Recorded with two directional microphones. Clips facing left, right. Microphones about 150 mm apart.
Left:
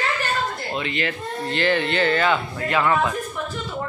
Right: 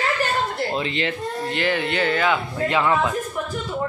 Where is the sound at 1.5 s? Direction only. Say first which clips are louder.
Left 3 dB; 10° right (ahead or behind).